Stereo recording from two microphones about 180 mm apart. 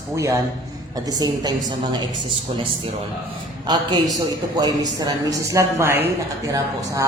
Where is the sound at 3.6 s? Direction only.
25° right (ahead or behind).